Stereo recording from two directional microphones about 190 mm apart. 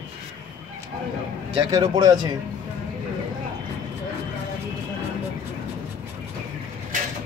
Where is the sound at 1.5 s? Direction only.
25° right (ahead or behind).